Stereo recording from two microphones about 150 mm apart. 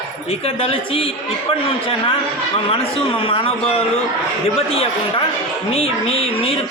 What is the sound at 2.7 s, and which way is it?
A man's voice, 40° left (ahead or behind).